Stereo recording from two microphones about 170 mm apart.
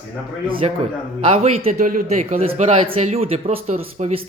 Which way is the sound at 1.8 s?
50° right (ahead or behind).